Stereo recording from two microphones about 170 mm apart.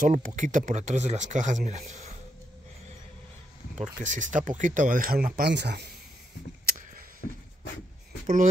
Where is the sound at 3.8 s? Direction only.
50° right (ahead or behind); by 5.9 s 85° right.